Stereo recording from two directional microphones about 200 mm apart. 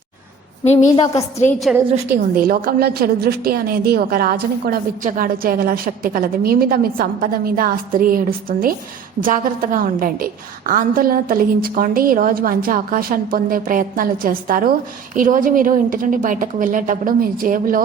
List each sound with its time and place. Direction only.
0.6 s a woman's voice: 35° left (ahead or behind)
2.3 s a woman's voice: 45° right (ahead or behind)